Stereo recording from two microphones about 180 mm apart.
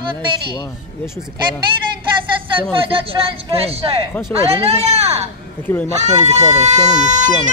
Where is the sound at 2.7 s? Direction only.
30° right (ahead or behind).